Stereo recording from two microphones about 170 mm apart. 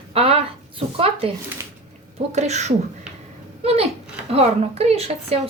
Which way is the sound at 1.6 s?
15° right (ahead or behind).